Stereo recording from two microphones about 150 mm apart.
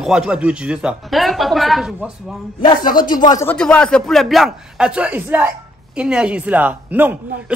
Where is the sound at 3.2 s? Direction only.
25° left (ahead or behind).